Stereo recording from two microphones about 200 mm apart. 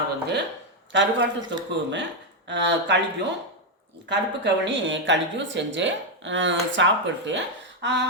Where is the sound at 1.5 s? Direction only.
60° right (ahead or behind).